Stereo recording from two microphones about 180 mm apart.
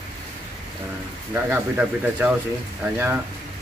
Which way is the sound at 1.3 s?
10° right (ahead or behind).